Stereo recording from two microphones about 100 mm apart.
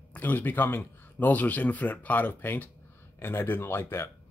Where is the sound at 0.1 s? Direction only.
20° left (ahead or behind).